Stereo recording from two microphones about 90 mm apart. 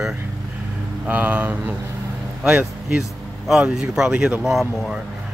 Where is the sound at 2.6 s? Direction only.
5° right (ahead or behind).